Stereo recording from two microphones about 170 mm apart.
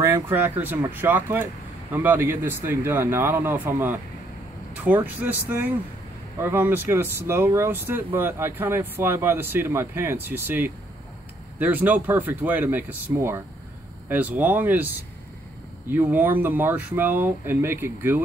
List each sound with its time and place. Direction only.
0.0 s speech: 15° right (ahead or behind)
15.9 s speech: 10° right (ahead or behind)